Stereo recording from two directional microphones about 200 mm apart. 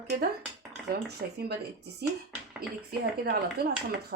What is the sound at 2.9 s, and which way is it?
Speech, 50° right (ahead or behind).